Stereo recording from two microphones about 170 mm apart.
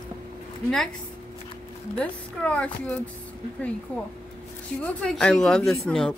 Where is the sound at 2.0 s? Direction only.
10° left (ahead or behind).